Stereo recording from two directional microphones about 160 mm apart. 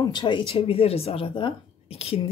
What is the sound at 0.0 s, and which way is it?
Speech, 30° left (ahead or behind).